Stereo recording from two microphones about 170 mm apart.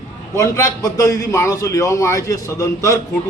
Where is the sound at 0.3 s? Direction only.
20° left (ahead or behind).